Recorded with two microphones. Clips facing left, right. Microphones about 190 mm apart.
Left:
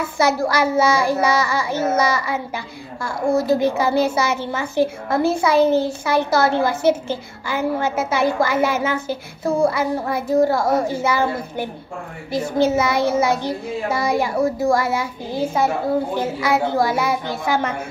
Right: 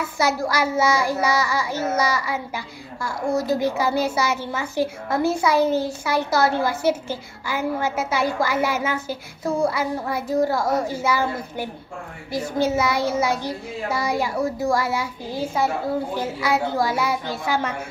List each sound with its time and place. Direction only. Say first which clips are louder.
0.0 s a woman's voice: left 4 dB; 30° left (ahead or behind)